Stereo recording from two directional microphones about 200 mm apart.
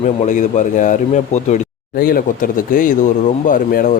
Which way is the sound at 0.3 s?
40° left (ahead or behind).